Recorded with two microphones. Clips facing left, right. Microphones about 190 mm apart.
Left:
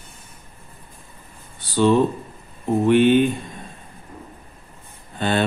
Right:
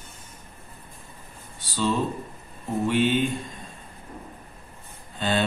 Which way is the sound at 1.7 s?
60° left (ahead or behind).